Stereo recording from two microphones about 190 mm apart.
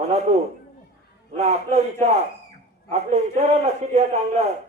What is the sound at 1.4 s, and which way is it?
A man's voice, 35° right (ahead or behind).